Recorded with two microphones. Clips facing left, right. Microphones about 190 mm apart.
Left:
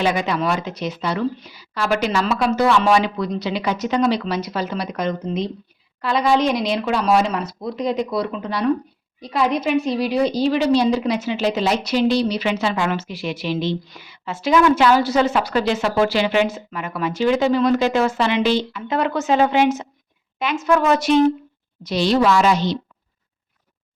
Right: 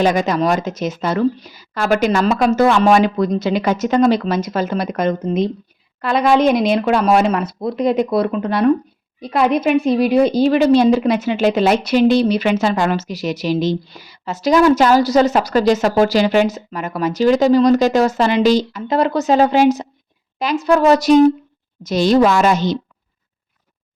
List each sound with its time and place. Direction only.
0.0 s a woman's voice: 45° right (ahead or behind)